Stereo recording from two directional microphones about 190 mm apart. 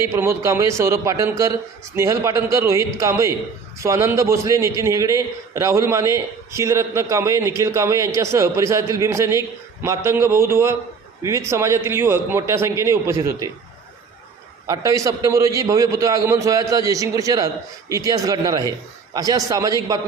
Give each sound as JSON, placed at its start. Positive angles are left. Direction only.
{"t": 0.0, "sound": "a man's voice", "side_deg": -15}
{"t": 14.7, "sound": "a man's voice", "side_deg": -15}